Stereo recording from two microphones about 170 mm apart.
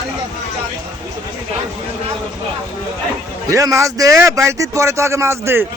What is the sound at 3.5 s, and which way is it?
Speech, 20° right (ahead or behind).